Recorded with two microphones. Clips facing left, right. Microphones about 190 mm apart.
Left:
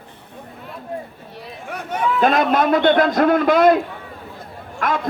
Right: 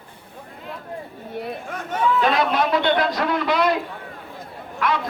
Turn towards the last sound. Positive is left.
turn(degrees=45)  # may be behind; listen again after turning